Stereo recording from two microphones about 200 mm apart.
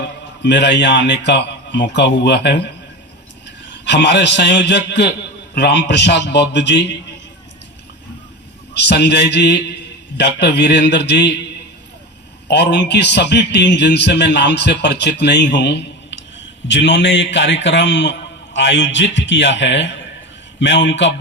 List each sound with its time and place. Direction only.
0.4 s a man's voice: 60° left (ahead or behind)
3.8 s a man's voice: 60° left (ahead or behind)
8.7 s a man's voice: 60° left (ahead or behind)
12.5 s a man's voice: 55° left (ahead or behind)